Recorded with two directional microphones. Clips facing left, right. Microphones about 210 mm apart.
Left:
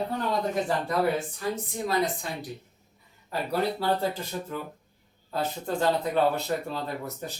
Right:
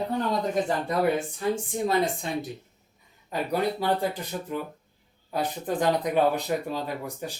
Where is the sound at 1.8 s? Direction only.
25° right (ahead or behind).